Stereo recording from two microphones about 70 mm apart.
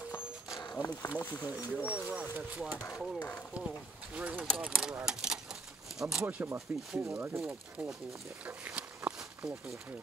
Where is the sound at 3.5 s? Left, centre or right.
Centre.